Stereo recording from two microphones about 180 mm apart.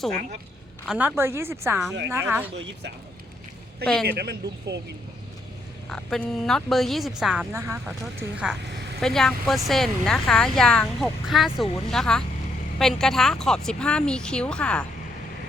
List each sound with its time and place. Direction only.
0.9 s speech: 10° right (ahead or behind)
4.0 s speech: 65° right (ahead or behind)
5.9 s speech: 5° left (ahead or behind)
7.5 s speech: 15° right (ahead or behind)
7.9 s speech: 5° right (ahead or behind)